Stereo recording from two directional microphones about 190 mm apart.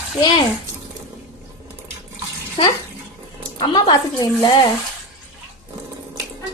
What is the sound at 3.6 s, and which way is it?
A woman's voice, 25° left (ahead or behind).